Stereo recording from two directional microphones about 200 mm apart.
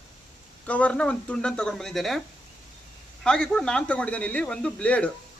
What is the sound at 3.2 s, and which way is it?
Speech, 5° left (ahead or behind).